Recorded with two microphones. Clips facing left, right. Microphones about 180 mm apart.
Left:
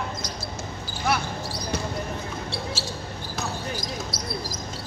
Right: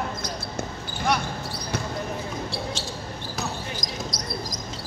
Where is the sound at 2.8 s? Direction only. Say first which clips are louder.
Even; 5° left (ahead or behind).